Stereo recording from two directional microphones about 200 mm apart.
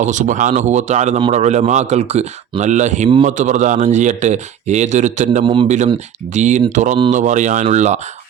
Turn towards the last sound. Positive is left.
turn(degrees=-35)  # may be behind; listen again after turning